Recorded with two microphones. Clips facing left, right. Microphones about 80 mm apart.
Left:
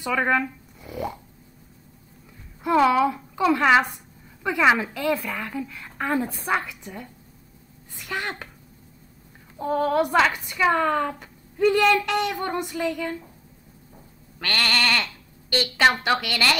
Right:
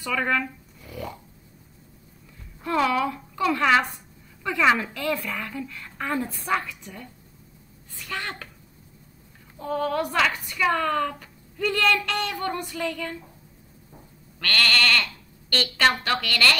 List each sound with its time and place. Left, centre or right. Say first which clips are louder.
0.0 s speech: left 3 dB; left
2.6 s a woman's voice: left 5 dB; left
5.9 s a woman's voice: left 3 dB; centre
8.1 s a woman's voice: left 3 dB; centre
9.6 s a woman's voice: left 4 dB; left
14.4 s speech: right 1 dB; centre